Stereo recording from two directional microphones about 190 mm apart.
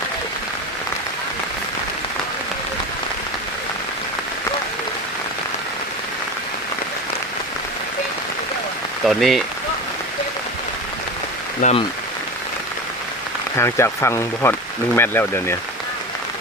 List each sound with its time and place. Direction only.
9.0 s speech: centre (ahead or behind)
11.6 s speech: 40° left (ahead or behind)
13.6 s speech: 15° left (ahead or behind)